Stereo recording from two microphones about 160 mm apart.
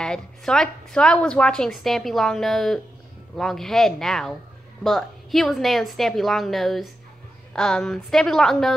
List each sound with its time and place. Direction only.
0.0 s a woman's voice: 5° left (ahead or behind)